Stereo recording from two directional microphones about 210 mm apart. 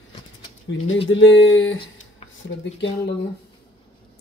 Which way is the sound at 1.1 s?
65° left (ahead or behind).